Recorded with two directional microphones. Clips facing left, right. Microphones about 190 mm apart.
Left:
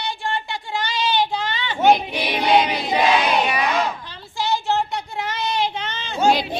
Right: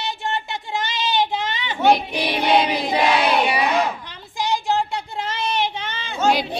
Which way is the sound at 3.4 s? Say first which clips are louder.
Right 1 dB; 15° right (ahead or behind).